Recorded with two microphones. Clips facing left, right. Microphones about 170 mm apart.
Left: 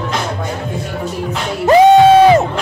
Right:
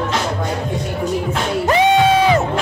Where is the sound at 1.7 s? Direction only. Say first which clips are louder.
Left 8 dB; 40° left (ahead or behind).